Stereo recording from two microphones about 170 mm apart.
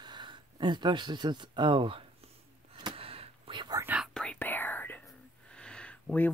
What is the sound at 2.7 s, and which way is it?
Whispering, 30° right (ahead or behind).